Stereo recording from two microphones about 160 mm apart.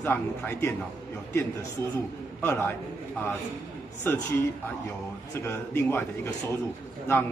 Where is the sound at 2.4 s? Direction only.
15° left (ahead or behind).